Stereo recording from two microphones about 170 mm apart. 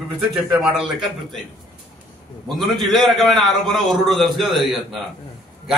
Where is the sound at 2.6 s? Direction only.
Centre (ahead or behind).